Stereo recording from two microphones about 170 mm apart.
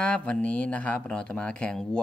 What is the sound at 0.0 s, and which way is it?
Speech, 5° left (ahead or behind).